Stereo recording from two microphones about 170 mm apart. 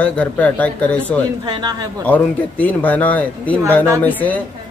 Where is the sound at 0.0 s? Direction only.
5° left (ahead or behind).